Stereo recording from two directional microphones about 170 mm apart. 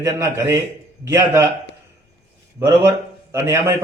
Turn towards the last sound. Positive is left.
turn(degrees=-15)  # may be behind; listen again after turning